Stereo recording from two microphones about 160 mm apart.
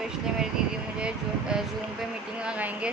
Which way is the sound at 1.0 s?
5° right (ahead or behind).